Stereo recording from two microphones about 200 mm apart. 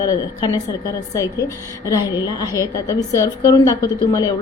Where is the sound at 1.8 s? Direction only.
20° left (ahead or behind).